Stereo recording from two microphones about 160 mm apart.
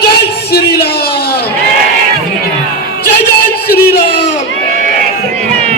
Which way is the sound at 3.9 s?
85° left.